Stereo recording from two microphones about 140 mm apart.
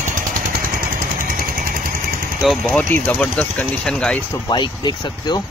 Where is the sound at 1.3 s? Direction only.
90° right.